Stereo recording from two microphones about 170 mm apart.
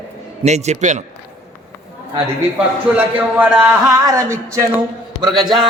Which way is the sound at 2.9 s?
10° right (ahead or behind).